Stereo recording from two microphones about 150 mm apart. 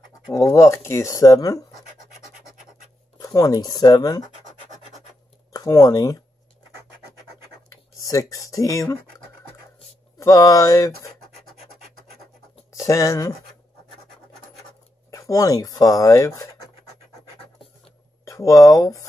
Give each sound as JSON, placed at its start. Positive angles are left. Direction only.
{"t": 0.3, "sound": "speech", "side_deg": 20}
{"t": 3.2, "sound": "speech", "side_deg": 25}
{"t": 5.5, "sound": "speech", "side_deg": 25}
{"t": 7.7, "sound": "speech", "side_deg": 20}
{"t": 10.1, "sound": "speech", "side_deg": 20}
{"t": 12.7, "sound": "speech", "side_deg": 20}
{"t": 15.0, "sound": "speech", "side_deg": 20}
{"t": 18.2, "sound": "speech", "side_deg": 20}